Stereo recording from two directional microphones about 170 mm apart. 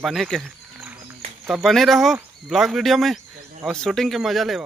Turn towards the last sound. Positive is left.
turn(degrees=0)  # may be behind; listen again after turning